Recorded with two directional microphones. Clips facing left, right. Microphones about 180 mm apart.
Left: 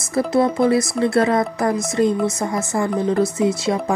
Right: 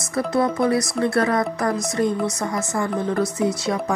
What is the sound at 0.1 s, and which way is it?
Speech, 25° left (ahead or behind).